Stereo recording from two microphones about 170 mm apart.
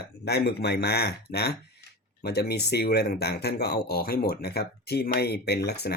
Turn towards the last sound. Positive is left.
turn(degrees=75)  # may be behind; listen again after turning